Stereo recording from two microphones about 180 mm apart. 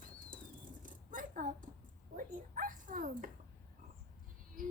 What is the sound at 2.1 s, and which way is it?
Dog, 45° right (ahead or behind).